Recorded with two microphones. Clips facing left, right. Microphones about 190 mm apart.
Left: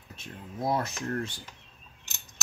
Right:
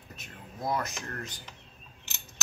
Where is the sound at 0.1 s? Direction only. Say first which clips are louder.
Left 5 dB; 25° left (ahead or behind).